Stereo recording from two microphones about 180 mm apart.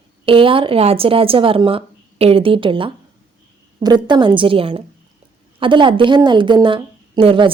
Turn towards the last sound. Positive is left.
turn(degrees=-30)  # may be behind; listen again after turning